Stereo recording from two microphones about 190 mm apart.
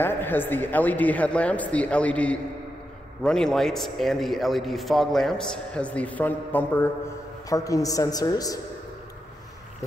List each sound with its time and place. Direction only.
0.0 s a man's voice: 10° left (ahead or behind)